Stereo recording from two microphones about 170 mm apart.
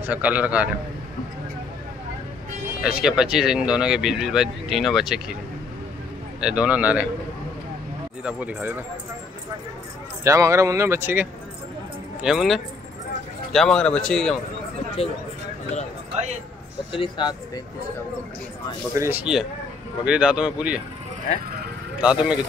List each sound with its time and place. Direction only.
0.0 s speech: 10° right (ahead or behind)
2.8 s speech: 5° right (ahead or behind)
6.4 s speech: 5° right (ahead or behind)
8.2 s speech: 10° right (ahead or behind)
10.2 s speech: 15° right (ahead or behind); by 14.4 s 5° left (ahead or behind)
15.0 s speech: 35° left (ahead or behind)
16.9 s speech: 30° left (ahead or behind)
18.9 s speech: 15° right (ahead or behind)
20.1 s speech: 5° right (ahead or behind)
22.0 s speech: 5° right (ahead or behind)